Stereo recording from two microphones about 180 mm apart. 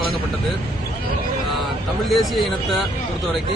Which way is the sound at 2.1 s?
Centre (ahead or behind).